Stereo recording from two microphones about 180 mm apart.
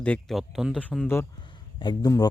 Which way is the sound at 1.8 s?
25° left (ahead or behind).